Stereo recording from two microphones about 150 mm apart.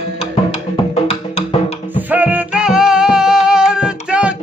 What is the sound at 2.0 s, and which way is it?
Music, 10° right (ahead or behind).